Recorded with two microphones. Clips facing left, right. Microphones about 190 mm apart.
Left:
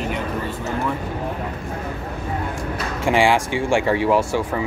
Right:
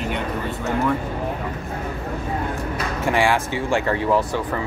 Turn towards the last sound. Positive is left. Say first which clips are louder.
# left 2 dB
turn(degrees=15)  # may be behind; listen again after turning